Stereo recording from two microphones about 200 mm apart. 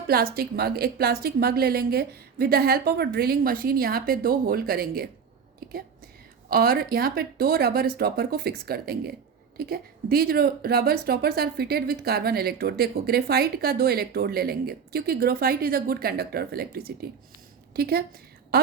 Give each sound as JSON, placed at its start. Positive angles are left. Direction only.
{"t": 0.3, "sound": "a woman's voice", "side_deg": -50}
{"t": 6.5, "sound": "a woman's voice", "side_deg": -50}